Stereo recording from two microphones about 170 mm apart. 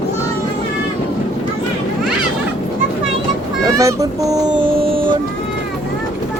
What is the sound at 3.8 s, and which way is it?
Speech, 20° right (ahead or behind).